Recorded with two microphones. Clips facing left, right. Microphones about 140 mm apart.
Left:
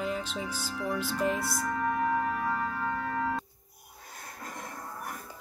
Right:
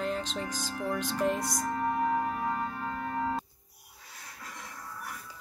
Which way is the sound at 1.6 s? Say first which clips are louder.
Even; 25° right (ahead or behind).